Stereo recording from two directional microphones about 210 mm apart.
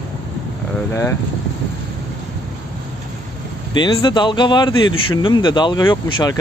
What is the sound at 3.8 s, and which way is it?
Speech, 25° left (ahead or behind).